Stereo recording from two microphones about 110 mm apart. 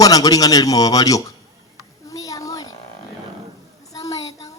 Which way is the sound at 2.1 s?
30° left (ahead or behind).